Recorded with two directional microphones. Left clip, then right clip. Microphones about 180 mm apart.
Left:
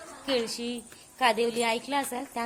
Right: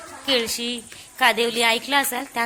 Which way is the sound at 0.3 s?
Centre (ahead or behind).